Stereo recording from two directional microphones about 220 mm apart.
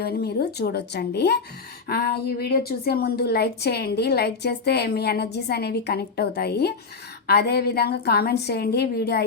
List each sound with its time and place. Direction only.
0.0 s a woman's voice: 45° left (ahead or behind)